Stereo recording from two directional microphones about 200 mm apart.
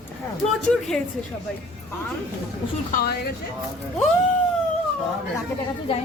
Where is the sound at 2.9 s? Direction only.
50° left (ahead or behind).